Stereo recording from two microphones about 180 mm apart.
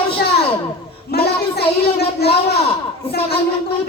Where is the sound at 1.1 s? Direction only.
60° left (ahead or behind).